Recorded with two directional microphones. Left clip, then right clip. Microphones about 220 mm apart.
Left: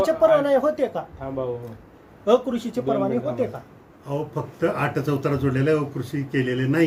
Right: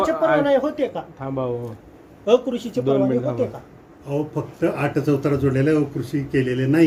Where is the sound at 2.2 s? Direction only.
25° left (ahead or behind).